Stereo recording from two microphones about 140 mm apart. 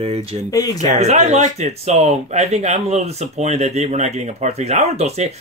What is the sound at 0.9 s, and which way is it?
Speech, 55° right (ahead or behind).